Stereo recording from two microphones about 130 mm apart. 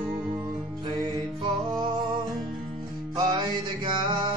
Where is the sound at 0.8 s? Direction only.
35° right (ahead or behind).